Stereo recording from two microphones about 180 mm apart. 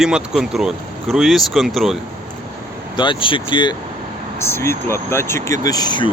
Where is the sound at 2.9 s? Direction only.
25° left (ahead or behind).